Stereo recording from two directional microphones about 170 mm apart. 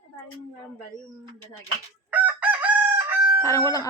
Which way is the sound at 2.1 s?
10° right (ahead or behind).